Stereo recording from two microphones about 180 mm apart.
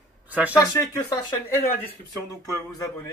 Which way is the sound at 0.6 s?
15° left (ahead or behind).